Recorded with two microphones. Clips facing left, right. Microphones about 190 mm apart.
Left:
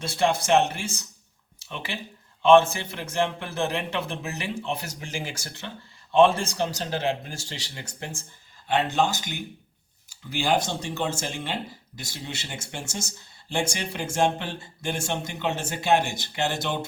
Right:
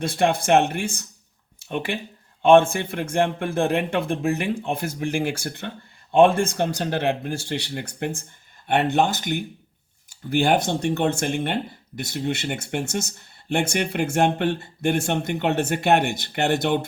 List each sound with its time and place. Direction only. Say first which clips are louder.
0.0 s a man's voice: right 3 dB; 55° right (ahead or behind)